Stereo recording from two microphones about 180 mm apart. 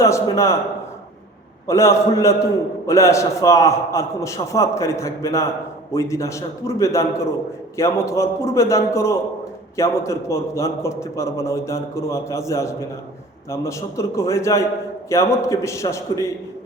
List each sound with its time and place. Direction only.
0.0 s a man's voice: 15° left (ahead or behind)
1.6 s a man's voice: 15° left (ahead or behind)